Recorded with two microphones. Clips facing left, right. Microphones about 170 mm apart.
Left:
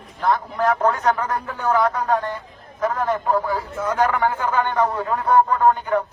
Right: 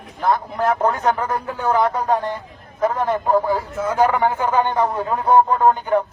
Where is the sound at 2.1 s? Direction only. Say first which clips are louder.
Right 1 dB; 15° right (ahead or behind).